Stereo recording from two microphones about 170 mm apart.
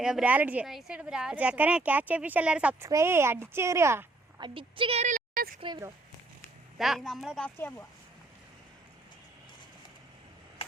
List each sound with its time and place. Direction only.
0.0 s a woman's voice: 5° right (ahead or behind)
4.4 s a woman's voice: 30° right (ahead or behind); by 5.5 s 55° right (ahead or behind)
5.5 s speech: 30° right (ahead or behind)
6.7 s speech: centre (ahead or behind)
10.6 s a sound: 35° left (ahead or behind)